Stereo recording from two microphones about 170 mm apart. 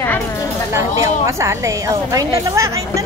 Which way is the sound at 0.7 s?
20° right (ahead or behind).